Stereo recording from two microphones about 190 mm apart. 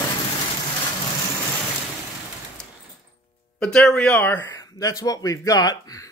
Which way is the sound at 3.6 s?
5° left (ahead or behind).